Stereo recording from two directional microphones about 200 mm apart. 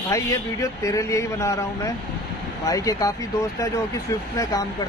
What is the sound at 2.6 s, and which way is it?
Speech, 15° left (ahead or behind).